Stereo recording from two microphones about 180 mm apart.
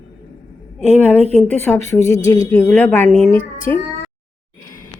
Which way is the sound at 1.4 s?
10° left (ahead or behind).